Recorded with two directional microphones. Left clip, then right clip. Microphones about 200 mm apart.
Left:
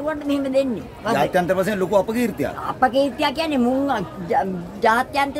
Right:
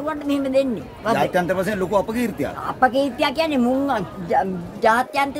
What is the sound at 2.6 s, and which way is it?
A woman's voice, 20° right (ahead or behind).